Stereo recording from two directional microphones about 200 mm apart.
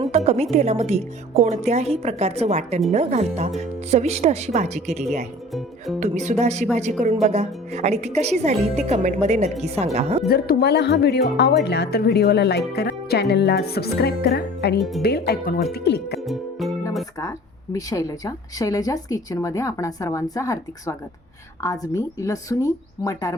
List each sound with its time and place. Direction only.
0.1 s music: 35° right (ahead or behind)
0.5 s a woman's voice: 30° right (ahead or behind)
10.2 s speech: 50° left (ahead or behind)
16.2 s music: centre (ahead or behind)
17.2 s a woman's voice: 20° left (ahead or behind)